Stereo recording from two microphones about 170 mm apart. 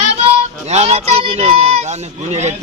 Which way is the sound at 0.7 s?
40° right (ahead or behind).